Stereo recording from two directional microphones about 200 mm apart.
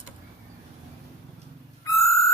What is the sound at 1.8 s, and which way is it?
Owl, 15° left (ahead or behind).